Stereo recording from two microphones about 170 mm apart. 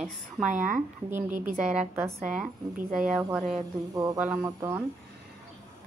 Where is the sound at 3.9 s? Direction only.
20° right (ahead or behind).